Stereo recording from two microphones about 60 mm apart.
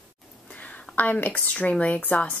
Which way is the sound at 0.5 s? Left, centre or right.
Left.